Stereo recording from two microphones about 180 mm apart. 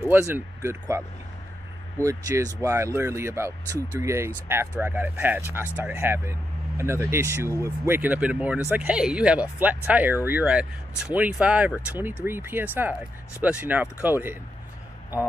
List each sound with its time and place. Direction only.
0.1 s speech: 15° right (ahead or behind)
2.0 s speech: 15° right (ahead or behind)